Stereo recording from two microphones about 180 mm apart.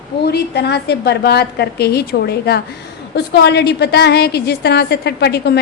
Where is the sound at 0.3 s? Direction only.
65° left (ahead or behind).